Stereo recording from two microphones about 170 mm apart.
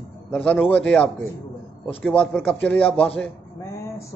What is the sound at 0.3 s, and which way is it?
A man's voice, 5° left (ahead or behind).